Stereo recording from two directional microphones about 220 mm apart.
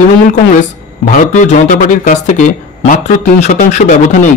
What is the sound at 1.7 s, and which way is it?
A man's voice, 35° left (ahead or behind).